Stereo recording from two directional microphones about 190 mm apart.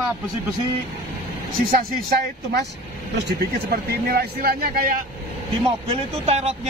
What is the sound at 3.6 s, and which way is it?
Speech, 55° right (ahead or behind).